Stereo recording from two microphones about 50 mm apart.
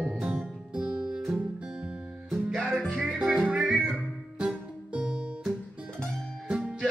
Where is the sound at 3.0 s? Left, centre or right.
Centre.